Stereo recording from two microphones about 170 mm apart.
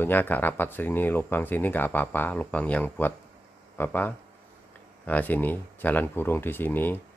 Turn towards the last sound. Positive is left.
turn(degrees=10)  # may be behind; listen again after turning